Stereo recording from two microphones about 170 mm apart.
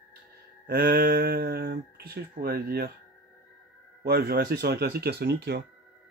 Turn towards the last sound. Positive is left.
turn(degrees=-75)  # may be behind; listen again after turning